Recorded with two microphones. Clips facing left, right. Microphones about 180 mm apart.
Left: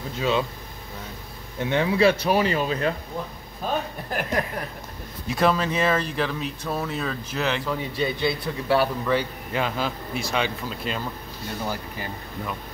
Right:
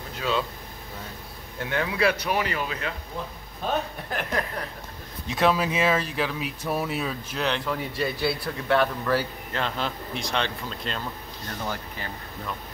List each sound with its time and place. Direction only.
0.2 s speech: 20° left (ahead or behind)
1.6 s speech: 25° left (ahead or behind)
3.6 s a man's voice: 5° left (ahead or behind)
8.7 s speech: 5° left (ahead or behind)